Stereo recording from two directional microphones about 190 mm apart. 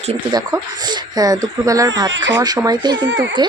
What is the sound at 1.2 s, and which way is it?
Speech, 20° right (ahead or behind).